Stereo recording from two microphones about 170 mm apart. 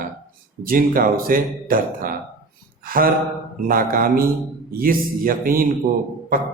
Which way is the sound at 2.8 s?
55° right (ahead or behind).